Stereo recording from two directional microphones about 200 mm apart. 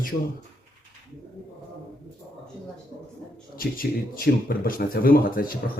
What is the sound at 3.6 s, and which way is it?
Speech, 45° left (ahead or behind).